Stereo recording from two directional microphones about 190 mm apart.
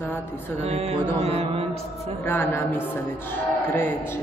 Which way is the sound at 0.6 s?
35° right (ahead or behind).